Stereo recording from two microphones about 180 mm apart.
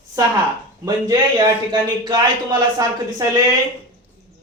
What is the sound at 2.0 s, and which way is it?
Speech, 25° right (ahead or behind).